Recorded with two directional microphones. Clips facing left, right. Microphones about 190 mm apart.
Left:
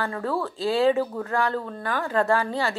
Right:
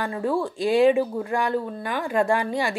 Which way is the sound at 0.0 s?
15° right (ahead or behind).